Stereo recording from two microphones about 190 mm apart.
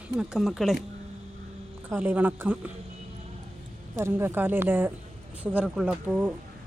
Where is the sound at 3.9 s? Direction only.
10° right (ahead or behind).